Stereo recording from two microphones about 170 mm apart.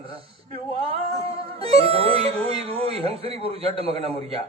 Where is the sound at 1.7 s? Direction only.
35° right (ahead or behind).